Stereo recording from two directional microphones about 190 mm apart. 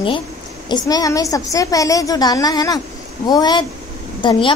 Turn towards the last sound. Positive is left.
turn(degrees=25)  # may be behind; listen again after turning